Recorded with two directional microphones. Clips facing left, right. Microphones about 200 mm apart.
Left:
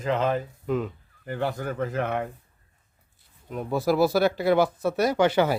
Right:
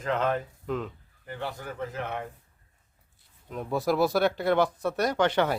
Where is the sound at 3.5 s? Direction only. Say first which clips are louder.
Left 3 dB; 5° left (ahead or behind).